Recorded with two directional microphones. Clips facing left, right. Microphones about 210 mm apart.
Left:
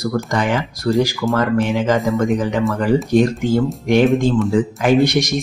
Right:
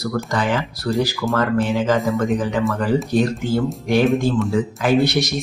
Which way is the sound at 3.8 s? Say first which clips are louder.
Left 3 dB; 15° left (ahead or behind).